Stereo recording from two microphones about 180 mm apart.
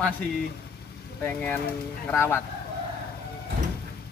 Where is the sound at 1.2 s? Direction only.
10° left (ahead or behind).